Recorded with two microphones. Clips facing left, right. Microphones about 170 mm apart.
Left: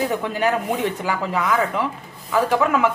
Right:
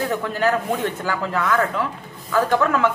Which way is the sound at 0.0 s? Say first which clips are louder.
Even; 15° left (ahead or behind).